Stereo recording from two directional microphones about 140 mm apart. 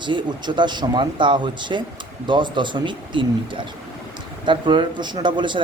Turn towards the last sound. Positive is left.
turn(degrees=-35)  # may be behind; listen again after turning